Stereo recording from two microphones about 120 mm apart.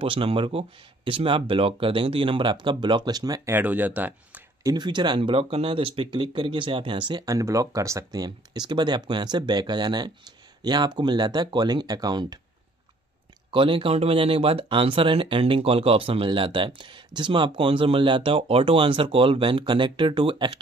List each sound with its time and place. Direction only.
0.0 s speech: 50° right (ahead or behind); by 3.5 s 30° right (ahead or behind)
3.5 s speech: 15° right (ahead or behind)
4.6 s speech: 35° right (ahead or behind)
13.5 s speech: 45° right (ahead or behind)